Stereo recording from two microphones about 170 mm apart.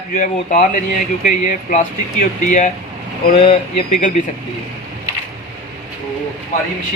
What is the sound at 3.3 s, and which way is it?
Speech, 30° left (ahead or behind).